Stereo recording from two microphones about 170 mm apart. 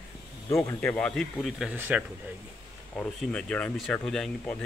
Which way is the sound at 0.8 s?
5° left (ahead or behind).